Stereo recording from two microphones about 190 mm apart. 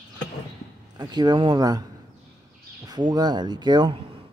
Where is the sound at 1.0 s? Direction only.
20° right (ahead or behind).